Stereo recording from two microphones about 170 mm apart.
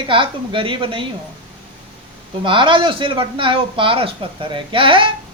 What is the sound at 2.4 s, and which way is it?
A man's voice, 30° right (ahead or behind).